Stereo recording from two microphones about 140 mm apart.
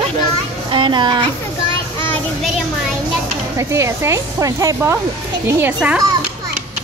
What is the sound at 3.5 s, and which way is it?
Speech, 20° right (ahead or behind).